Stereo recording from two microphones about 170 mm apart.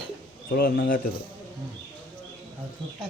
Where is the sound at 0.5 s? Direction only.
65° left (ahead or behind).